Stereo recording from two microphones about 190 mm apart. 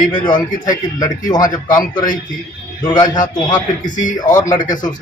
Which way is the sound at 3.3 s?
20° left (ahead or behind).